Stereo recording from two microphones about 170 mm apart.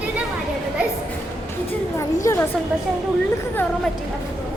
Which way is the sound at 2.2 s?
15° left (ahead or behind).